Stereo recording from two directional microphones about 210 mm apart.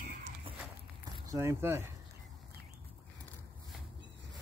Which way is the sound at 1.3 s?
15° right (ahead or behind).